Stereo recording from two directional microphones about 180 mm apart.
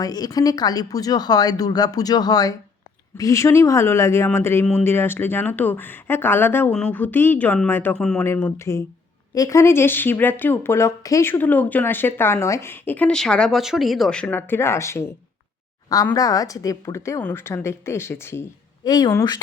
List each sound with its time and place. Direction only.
0.0 s a woman's voice: 20° left (ahead or behind)
16.1 s a woman's voice: 20° left (ahead or behind)